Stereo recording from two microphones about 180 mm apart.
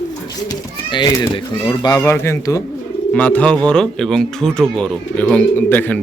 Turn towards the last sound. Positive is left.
turn(degrees=10)  # may be behind; listen again after turning